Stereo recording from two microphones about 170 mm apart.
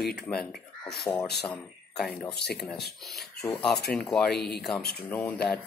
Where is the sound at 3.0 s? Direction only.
Centre (ahead or behind).